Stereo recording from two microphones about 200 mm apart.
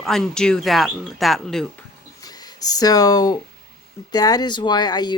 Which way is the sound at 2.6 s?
20° left (ahead or behind).